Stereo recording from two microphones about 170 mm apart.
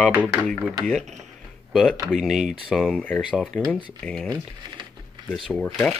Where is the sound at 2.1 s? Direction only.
Centre (ahead or behind).